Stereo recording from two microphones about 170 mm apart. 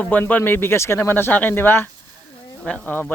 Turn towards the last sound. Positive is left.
turn(degrees=10)  # may be behind; listen again after turning